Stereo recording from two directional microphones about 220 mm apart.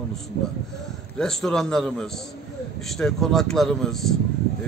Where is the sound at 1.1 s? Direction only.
5° left (ahead or behind).